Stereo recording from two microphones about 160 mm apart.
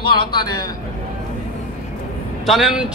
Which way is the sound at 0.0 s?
30° left (ahead or behind).